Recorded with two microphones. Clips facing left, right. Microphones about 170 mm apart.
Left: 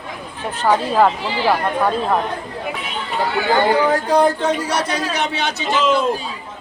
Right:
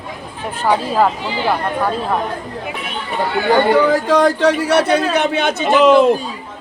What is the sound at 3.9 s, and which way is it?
A man's voice, 90° right.